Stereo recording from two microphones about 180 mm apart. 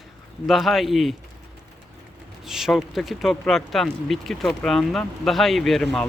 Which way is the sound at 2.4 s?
Centre (ahead or behind).